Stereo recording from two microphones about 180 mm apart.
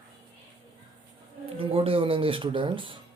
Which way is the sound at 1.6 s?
30° right (ahead or behind).